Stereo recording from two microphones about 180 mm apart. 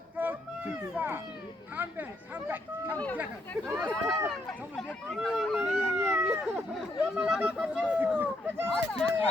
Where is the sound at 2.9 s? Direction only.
10° left (ahead or behind).